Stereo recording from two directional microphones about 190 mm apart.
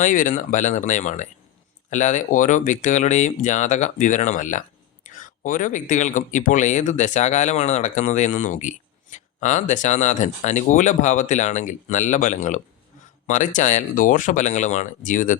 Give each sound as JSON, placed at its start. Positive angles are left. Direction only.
{"t": 0.0, "sound": "speech", "side_deg": 40}